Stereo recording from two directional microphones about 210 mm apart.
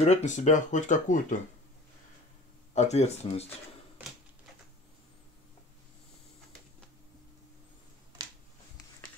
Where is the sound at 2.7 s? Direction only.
30° left (ahead or behind).